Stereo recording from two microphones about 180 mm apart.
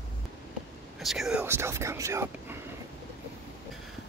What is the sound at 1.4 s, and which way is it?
Speech, 15° right (ahead or behind).